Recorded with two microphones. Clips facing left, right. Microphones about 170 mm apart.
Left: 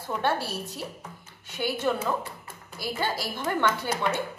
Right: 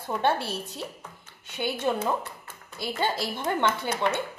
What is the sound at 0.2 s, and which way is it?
A woman's voice, 20° right (ahead or behind).